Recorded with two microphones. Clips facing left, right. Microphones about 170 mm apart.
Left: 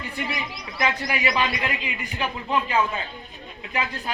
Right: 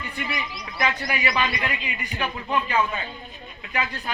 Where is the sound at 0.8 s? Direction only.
20° left (ahead or behind).